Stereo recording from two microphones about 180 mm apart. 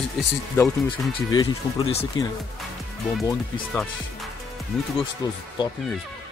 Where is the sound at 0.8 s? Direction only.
25° left (ahead or behind).